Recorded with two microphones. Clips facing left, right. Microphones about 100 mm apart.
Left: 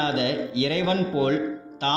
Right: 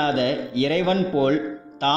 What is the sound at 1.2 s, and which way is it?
Music, 40° right (ahead or behind).